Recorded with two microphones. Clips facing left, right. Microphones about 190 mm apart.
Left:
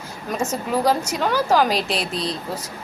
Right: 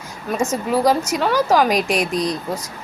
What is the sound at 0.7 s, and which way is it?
A woman's voice, 10° right (ahead or behind).